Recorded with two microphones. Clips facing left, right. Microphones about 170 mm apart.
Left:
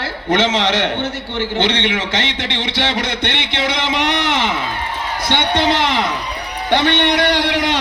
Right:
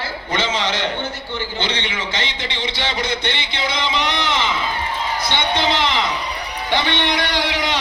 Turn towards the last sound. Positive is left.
turn(degrees=60)  # may be behind; listen again after turning